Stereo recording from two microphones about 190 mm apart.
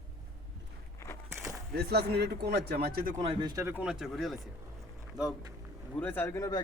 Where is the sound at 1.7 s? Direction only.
60° right (ahead or behind).